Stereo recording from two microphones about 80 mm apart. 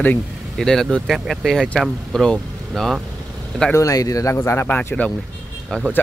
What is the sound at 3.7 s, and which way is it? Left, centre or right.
Speech, left.